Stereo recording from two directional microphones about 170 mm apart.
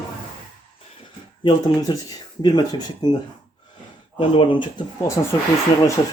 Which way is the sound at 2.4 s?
25° left (ahead or behind).